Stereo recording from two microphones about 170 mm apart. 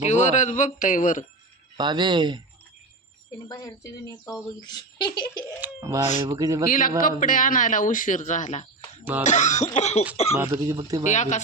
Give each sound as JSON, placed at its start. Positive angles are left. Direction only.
{"t": 0.0, "sound": "speech", "side_deg": 45}
{"t": 1.7, "sound": "speech", "side_deg": -25}
{"t": 3.5, "sound": "speech", "side_deg": 20}
{"t": 5.5, "sound": "speech", "side_deg": -15}
{"t": 6.7, "sound": "speech", "side_deg": 55}
{"t": 10.3, "sound": "speech", "side_deg": -20}
{"t": 11.0, "sound": "speech", "side_deg": 45}